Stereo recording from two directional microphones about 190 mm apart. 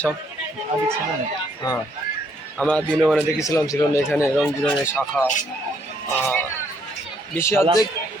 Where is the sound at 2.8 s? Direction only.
5° right (ahead or behind).